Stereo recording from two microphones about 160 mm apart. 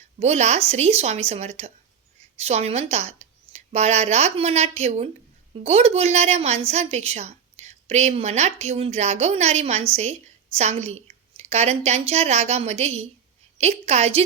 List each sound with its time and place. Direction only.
0.2 s a woman's voice: 45° right (ahead or behind)